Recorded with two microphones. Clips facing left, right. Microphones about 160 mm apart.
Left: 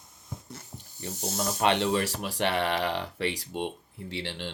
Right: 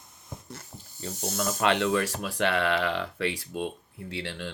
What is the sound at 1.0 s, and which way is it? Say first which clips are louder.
Speech: right 1 dB; 25° left (ahead or behind).